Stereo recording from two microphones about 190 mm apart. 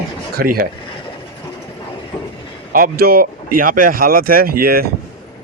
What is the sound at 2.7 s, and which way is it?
Speech, 50° right (ahead or behind).